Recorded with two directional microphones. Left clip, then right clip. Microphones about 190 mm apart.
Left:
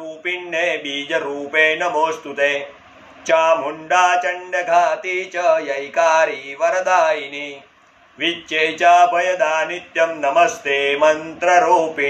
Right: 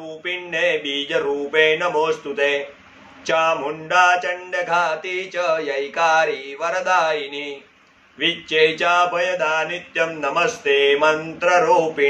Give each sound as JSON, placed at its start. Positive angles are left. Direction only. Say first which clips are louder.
{"t": 0.2, "sound": "mantra", "louder": "left 1 dB", "side_deg": -20}
{"t": 8.2, "sound": "mantra", "louder": "right 2 dB", "side_deg": -20}